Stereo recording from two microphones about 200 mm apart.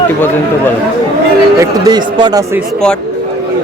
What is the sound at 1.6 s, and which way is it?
Speech, 20° right (ahead or behind).